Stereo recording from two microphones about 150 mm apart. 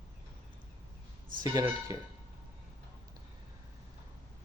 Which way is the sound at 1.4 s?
30° right (ahead or behind).